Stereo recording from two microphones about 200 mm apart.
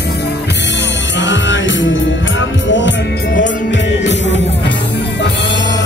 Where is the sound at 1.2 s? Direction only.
65° left (ahead or behind).